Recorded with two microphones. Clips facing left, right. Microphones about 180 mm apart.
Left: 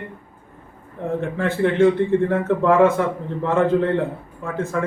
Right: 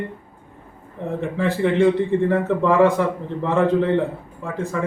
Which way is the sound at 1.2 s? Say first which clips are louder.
Even; centre (ahead or behind).